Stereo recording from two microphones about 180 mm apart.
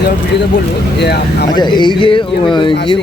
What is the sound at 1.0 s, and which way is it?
Speech, 65° left (ahead or behind).